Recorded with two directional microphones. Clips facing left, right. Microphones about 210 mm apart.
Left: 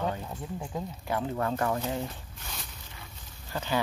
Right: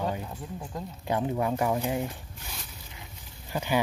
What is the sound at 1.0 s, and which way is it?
Speech, 20° right (ahead or behind).